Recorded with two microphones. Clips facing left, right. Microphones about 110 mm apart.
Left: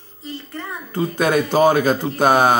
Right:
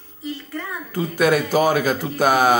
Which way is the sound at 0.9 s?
25° left (ahead or behind).